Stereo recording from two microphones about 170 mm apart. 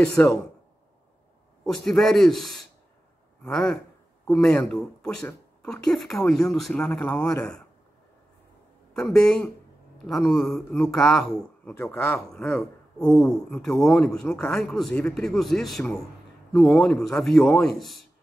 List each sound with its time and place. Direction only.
0.0 s speech: 5° left (ahead or behind)
1.9 s speech: centre (ahead or behind)
8.9 s speech: 5° left (ahead or behind)